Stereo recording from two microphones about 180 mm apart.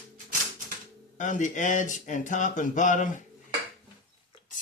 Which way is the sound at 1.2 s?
45° left (ahead or behind).